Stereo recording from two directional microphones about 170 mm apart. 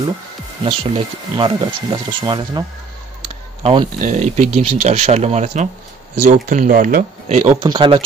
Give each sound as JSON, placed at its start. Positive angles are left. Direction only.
{"t": 0.7, "sound": "speech", "side_deg": -30}
{"t": 3.6, "sound": "speech", "side_deg": -30}
{"t": 4.0, "sound": "speech", "side_deg": -45}
{"t": 7.6, "sound": "speech", "side_deg": -30}